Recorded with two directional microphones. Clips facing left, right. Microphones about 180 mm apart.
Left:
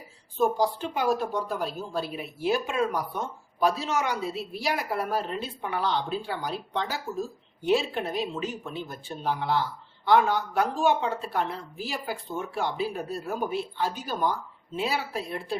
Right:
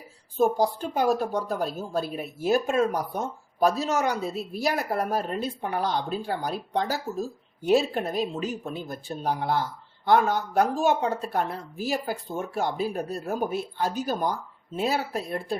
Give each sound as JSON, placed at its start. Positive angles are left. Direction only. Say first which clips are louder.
{"t": 0.4, "sound": "speech", "louder": "right 2 dB", "side_deg": -45}